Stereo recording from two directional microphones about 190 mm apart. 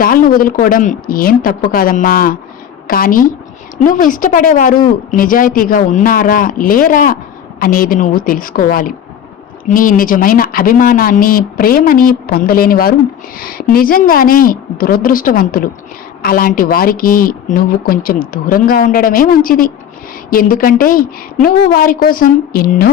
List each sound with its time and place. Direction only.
0.0 s a woman's voice: 45° left (ahead or behind)